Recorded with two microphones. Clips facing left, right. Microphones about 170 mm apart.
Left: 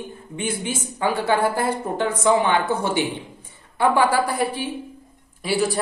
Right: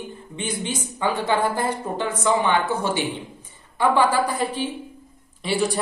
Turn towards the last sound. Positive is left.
turn(degrees=0)  # may be behind; listen again after turning